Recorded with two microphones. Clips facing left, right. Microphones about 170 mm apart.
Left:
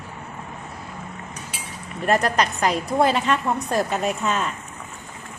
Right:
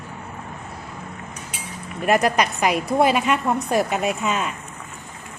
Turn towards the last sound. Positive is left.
turn(degrees=-10)  # may be behind; listen again after turning